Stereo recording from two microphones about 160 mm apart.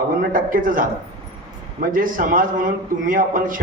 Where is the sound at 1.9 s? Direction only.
60° right (ahead or behind).